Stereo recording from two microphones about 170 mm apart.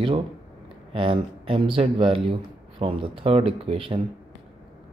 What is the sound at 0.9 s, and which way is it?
Speech, 30° right (ahead or behind).